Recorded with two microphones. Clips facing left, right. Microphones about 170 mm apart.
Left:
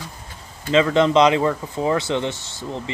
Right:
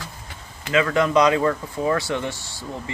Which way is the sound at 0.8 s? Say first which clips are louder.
Left 2 dB; 25° left (ahead or behind).